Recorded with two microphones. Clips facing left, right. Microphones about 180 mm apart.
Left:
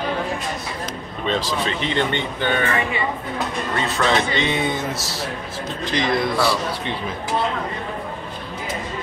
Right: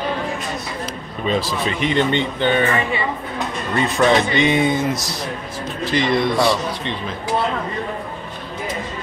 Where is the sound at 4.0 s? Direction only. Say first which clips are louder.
Right 5 dB; 15° right (ahead or behind).